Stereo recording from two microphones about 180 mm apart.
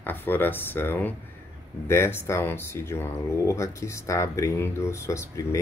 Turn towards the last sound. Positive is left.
turn(degrees=15)  # may be behind; listen again after turning